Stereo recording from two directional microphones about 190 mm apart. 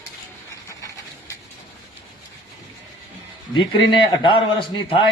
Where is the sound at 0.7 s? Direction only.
15° left (ahead or behind).